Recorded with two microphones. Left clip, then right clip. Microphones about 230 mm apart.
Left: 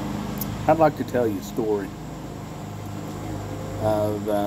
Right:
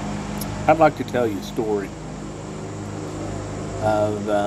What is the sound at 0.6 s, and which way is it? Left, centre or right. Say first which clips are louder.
Speech: right 3 dB; centre.